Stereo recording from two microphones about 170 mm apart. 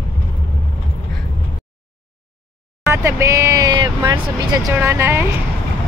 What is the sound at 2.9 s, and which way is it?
Vehicle, 15° right (ahead or behind).